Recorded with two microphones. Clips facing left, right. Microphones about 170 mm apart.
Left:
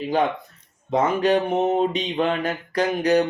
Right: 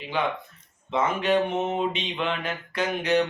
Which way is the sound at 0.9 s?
40° left (ahead or behind).